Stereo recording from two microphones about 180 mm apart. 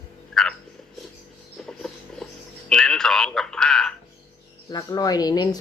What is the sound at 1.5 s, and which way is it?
Rodents, 5° left (ahead or behind).